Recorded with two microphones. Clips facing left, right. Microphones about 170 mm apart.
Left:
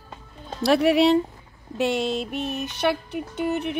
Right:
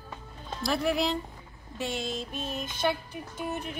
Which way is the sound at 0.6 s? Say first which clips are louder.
Left 10 dB; 70° left (ahead or behind).